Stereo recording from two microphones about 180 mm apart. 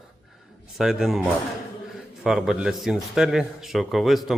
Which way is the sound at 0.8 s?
5° right (ahead or behind).